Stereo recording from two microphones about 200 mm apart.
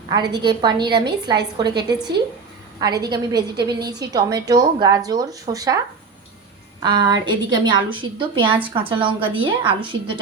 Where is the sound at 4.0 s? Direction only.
20° right (ahead or behind).